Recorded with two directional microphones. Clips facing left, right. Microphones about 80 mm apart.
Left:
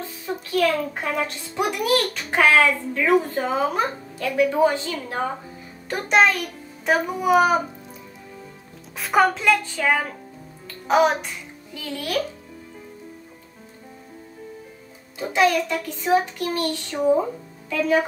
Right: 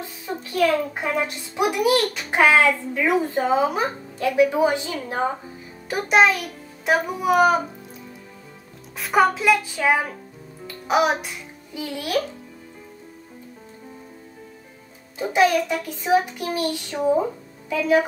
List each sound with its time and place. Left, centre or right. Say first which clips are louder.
0.4 s a sound: right 1 dB; centre
0.7 s a child's voice: right 1 dB; centre
2.3 s a child's voice: even; centre
8.9 s a child's voice: even; centre
15.3 s a child's voice: right 1 dB; centre